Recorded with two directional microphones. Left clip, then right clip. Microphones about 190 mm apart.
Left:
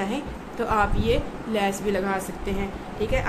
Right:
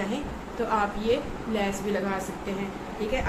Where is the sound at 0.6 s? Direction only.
50° left (ahead or behind).